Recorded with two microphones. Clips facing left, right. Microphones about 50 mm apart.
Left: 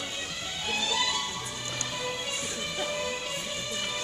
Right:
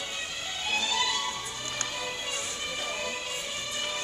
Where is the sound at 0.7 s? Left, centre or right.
Centre.